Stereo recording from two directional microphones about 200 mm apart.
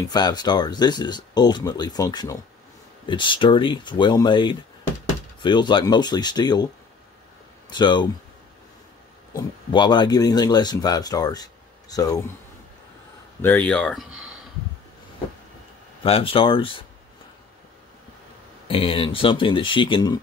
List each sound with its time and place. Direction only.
0.1 s speech: 20° left (ahead or behind)
7.7 s speech: 20° left (ahead or behind)
9.3 s speech: 20° left (ahead or behind)
13.4 s speech: 10° left (ahead or behind)
16.0 s speech: 30° left (ahead or behind)
18.7 s speech: 25° left (ahead or behind)